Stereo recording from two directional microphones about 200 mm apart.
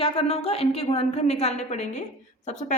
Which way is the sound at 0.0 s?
30° left (ahead or behind).